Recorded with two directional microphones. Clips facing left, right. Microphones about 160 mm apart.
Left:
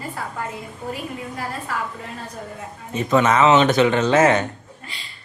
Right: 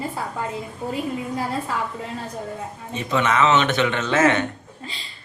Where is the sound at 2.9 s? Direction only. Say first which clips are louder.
Left 4 dB; 40° left (ahead or behind).